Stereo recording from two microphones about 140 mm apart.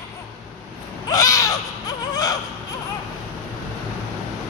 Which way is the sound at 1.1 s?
25° left (ahead or behind).